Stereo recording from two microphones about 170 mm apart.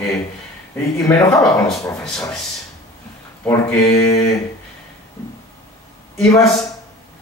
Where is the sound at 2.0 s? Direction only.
5° left (ahead or behind).